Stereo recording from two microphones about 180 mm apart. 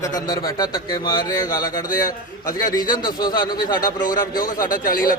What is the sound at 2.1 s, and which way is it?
Speech, 50° left (ahead or behind).